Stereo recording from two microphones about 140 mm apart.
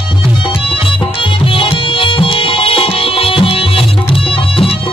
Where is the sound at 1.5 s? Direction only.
40° left (ahead or behind).